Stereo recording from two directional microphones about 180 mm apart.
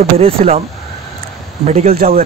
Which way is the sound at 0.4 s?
40° right (ahead or behind).